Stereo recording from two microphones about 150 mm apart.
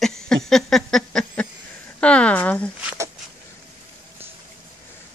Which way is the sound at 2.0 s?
10° left (ahead or behind).